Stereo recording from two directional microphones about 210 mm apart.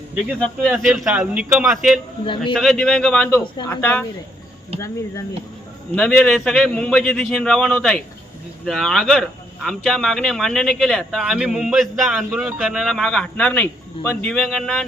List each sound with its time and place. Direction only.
0.3 s speech: centre (ahead or behind)
2.2 s a man's voice: 25° left (ahead or behind)
2.5 s speech: centre (ahead or behind)
5.9 s speech: 5° left (ahead or behind)